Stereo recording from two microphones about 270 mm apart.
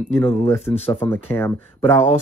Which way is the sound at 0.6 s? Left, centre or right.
Left.